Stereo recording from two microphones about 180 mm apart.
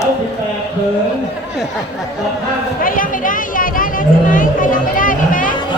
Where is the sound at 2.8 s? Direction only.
50° left (ahead or behind).